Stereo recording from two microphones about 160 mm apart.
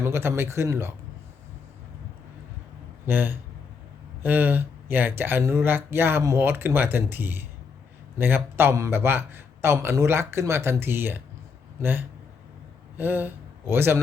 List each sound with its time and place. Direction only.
0.0 s speech: 15° right (ahead or behind)
3.1 s speech: 10° right (ahead or behind)